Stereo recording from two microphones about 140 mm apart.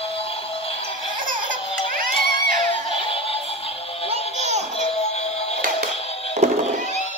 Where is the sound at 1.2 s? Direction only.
80° right.